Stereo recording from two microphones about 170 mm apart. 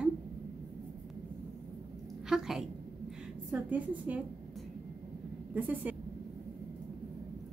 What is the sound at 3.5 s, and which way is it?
Speech, 10° right (ahead or behind).